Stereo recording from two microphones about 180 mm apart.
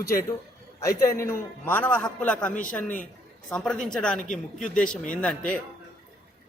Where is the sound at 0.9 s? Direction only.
20° left (ahead or behind).